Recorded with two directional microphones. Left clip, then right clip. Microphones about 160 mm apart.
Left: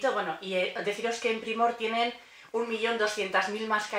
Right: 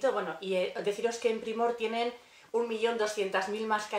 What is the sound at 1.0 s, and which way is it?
A woman's voice, 35° right (ahead or behind).